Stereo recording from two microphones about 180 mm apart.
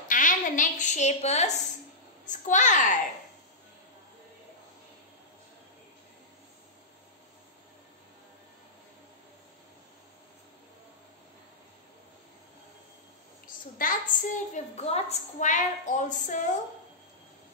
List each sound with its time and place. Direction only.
0.1 s a woman's voice: 45° left (ahead or behind)
13.7 s a woman's voice: 50° left (ahead or behind)